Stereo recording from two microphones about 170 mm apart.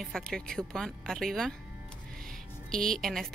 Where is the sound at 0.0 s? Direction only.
5° left (ahead or behind).